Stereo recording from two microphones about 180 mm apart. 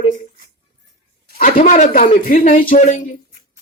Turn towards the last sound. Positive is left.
turn(degrees=45)  # may be behind; listen again after turning